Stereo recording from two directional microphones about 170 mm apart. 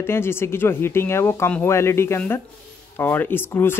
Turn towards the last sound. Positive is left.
turn(degrees=15)  # may be behind; listen again after turning